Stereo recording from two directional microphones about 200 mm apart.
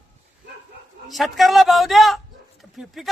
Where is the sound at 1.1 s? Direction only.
Centre (ahead or behind).